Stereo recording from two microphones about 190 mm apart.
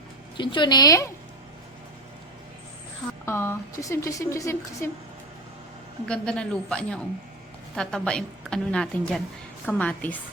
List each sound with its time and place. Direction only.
0.3 s a woman's voice: 25° left (ahead or behind)
3.2 s a woman's voice: 15° left (ahead or behind)
6.1 s a woman's voice: 5° left (ahead or behind)